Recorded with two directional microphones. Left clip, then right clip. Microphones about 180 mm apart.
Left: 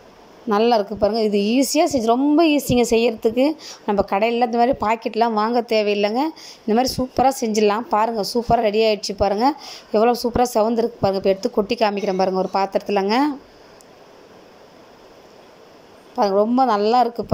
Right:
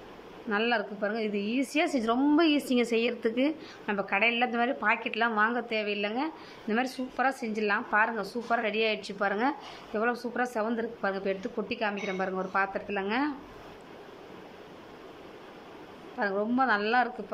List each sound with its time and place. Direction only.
0.5 s a woman's voice: 35° left (ahead or behind)
3.6 s speech: 35° left (ahead or behind)
16.2 s speech: 30° left (ahead or behind)